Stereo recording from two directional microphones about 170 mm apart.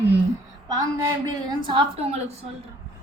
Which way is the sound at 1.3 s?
25° right (ahead or behind).